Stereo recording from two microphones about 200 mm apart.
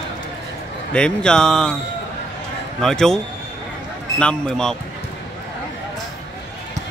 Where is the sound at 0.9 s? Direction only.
5° left (ahead or behind).